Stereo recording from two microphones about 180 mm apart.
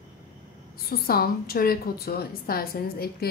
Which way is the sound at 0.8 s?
55° left (ahead or behind).